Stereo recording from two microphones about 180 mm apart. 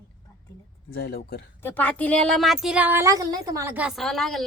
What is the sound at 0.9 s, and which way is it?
Speech, 55° left (ahead or behind).